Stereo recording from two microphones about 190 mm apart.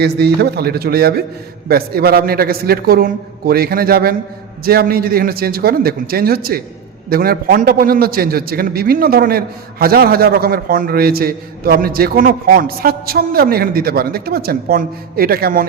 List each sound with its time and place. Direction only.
0.0 s a man's voice: 55° right (ahead or behind)